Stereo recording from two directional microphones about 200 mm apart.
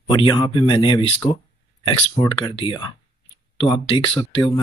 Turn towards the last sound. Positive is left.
turn(degrees=25)  # may be behind; listen again after turning